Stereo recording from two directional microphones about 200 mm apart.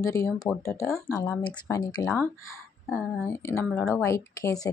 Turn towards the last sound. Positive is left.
turn(degrees=15)  # may be behind; listen again after turning